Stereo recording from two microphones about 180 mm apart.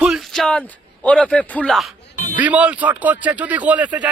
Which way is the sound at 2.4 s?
10° right (ahead or behind).